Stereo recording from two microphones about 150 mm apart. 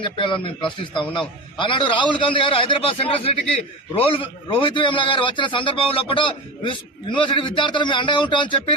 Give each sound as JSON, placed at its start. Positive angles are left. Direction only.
{"t": 0.0, "sound": "a man's voice", "side_deg": 35}